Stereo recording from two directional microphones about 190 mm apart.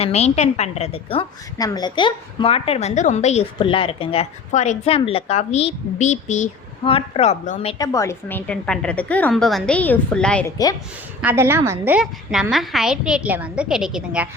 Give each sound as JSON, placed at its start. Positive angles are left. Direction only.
{"t": 0.0, "sound": "a woman's voice", "side_deg": 35}
{"t": 1.5, "sound": "a woman's voice", "side_deg": 20}
{"t": 7.8, "sound": "a woman's voice", "side_deg": 15}
{"t": 11.2, "sound": "a woman's voice", "side_deg": -10}